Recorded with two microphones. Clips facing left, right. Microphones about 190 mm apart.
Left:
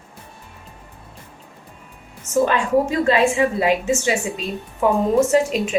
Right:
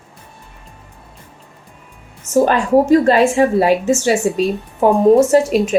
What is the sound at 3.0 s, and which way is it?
A woman's voice, 40° right (ahead or behind).